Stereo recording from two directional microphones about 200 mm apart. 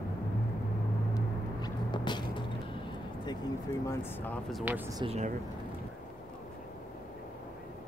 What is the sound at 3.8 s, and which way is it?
Speech, 10° left (ahead or behind).